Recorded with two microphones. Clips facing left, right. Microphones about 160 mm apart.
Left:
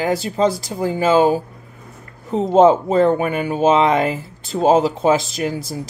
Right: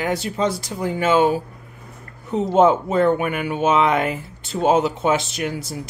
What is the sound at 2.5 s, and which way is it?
Speech, 30° left (ahead or behind).